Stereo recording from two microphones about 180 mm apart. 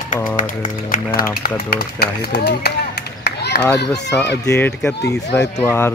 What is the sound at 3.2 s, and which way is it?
Run, 60° left (ahead or behind).